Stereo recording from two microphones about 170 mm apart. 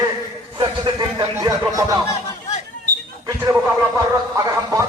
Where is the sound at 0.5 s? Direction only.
25° right (ahead or behind).